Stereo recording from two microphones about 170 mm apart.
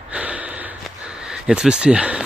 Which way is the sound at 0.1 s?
10° right (ahead or behind).